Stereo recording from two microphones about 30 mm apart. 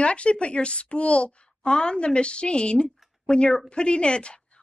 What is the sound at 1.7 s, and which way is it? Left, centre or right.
A woman's voice, left.